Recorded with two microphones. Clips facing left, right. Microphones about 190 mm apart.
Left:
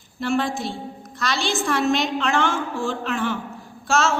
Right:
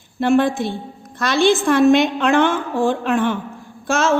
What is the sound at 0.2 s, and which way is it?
A woman's voice, 55° right (ahead or behind).